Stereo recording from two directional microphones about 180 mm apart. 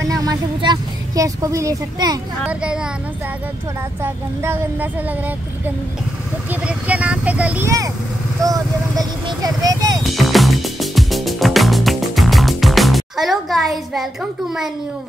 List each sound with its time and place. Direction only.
0.1 s vehicle: 20° right (ahead or behind)
2.4 s speech: 5° right (ahead or behind)
4.0 s a sound: 10° right (ahead or behind)
6.5 s speech: 5° right (ahead or behind)
10.1 s music: centre (ahead or behind)